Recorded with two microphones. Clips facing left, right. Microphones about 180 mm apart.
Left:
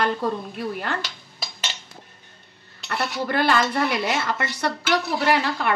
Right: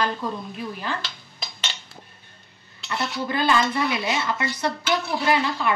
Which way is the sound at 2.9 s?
65° left (ahead or behind).